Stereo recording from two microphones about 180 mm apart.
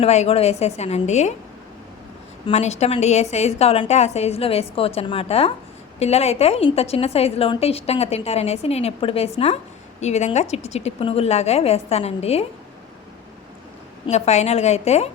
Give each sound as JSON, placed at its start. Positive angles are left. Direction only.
{"t": 0.0, "sound": "a woman's voice", "side_deg": 35}
{"t": 2.5, "sound": "a woman's voice", "side_deg": 40}
{"t": 14.1, "sound": "a woman's voice", "side_deg": 40}